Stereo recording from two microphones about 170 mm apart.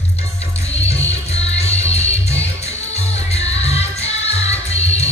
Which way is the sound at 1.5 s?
40° left (ahead or behind).